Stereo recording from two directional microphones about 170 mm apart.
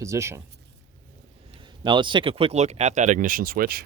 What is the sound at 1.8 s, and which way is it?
Speech, 25° right (ahead or behind).